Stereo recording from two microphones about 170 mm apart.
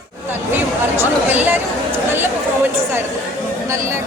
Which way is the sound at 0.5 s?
10° right (ahead or behind).